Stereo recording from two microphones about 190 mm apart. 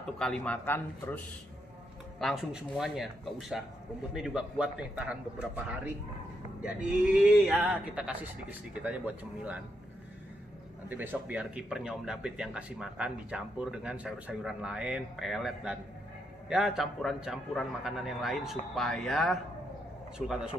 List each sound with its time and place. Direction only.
0.0 s speech: 5° left (ahead or behind)
2.1 s a man's voice: centre (ahead or behind)
10.9 s a man's voice: 10° right (ahead or behind)